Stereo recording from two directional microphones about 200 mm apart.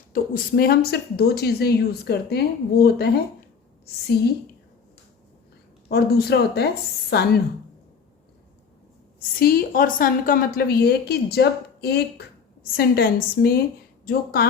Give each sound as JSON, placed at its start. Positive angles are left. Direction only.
{"t": 0.1, "sound": "a woman's voice", "side_deg": 45}
{"t": 5.9, "sound": "a woman's voice", "side_deg": 50}
{"t": 9.4, "sound": "a woman's voice", "side_deg": 45}